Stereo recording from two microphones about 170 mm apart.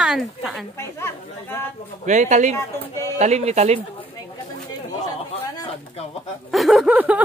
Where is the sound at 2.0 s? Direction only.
45° right (ahead or behind).